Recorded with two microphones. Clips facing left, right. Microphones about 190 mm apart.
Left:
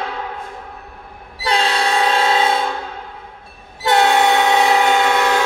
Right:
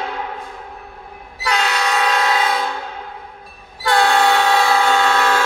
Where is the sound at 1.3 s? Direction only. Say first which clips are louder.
Left 2 dB; 30° left (ahead or behind).